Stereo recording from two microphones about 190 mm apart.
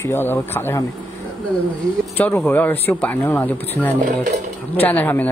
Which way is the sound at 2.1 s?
10° left (ahead or behind).